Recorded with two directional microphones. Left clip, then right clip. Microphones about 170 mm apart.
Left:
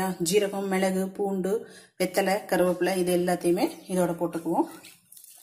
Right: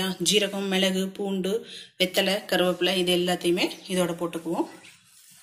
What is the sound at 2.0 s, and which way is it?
Speech, 20° left (ahead or behind).